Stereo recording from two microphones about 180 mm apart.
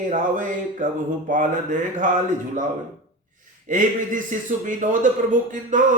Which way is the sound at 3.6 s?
45° right (ahead or behind).